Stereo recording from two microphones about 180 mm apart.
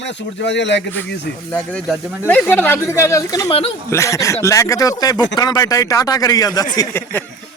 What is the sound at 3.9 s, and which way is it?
Speech, 15° left (ahead or behind).